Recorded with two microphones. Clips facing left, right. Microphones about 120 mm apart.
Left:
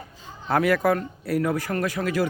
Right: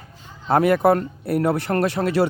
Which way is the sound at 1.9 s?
30° right (ahead or behind).